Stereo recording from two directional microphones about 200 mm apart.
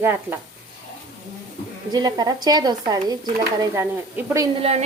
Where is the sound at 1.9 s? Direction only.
20° right (ahead or behind).